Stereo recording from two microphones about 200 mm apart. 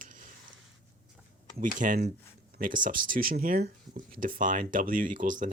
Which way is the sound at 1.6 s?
40° right (ahead or behind).